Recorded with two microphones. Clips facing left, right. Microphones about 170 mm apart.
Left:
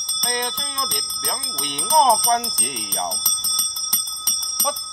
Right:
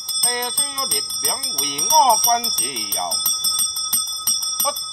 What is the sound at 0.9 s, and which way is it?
Speech, centre (ahead or behind).